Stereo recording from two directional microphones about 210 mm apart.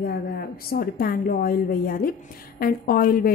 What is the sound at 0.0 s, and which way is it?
A woman's voice, 50° left (ahead or behind).